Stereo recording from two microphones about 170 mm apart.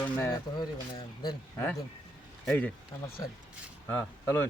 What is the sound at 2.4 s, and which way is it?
Speech, 5° left (ahead or behind).